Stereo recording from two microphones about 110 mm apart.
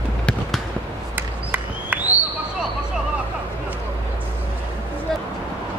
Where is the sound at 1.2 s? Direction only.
15° right (ahead or behind).